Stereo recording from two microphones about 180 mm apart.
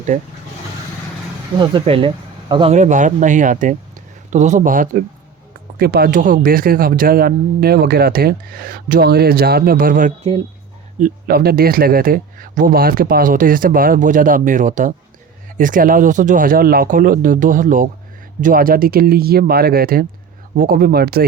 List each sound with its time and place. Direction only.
1.5 s speech: 25° right (ahead or behind)
2.7 s speech: 45° right (ahead or behind)
5.8 s speech: 60° right (ahead or behind)